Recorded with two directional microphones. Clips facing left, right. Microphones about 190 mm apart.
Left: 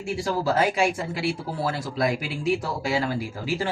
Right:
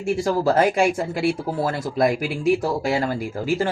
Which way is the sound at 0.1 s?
50° right (ahead or behind).